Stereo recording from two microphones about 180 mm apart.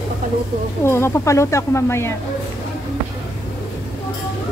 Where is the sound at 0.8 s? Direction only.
15° left (ahead or behind).